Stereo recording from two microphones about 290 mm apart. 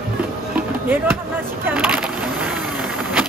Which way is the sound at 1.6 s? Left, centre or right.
Centre.